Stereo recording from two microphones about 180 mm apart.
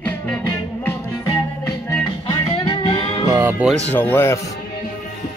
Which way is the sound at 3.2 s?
15° right (ahead or behind).